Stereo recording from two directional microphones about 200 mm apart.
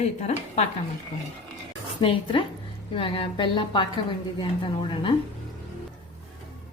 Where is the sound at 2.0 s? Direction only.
25° left (ahead or behind).